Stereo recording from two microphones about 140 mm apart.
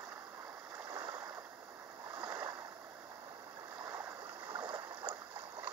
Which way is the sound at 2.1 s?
25° right (ahead or behind).